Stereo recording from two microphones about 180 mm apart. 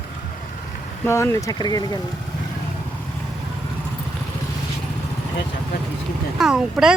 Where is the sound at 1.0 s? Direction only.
15° left (ahead or behind).